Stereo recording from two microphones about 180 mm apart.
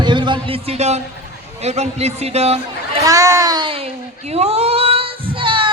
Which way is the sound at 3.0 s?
20° right (ahead or behind).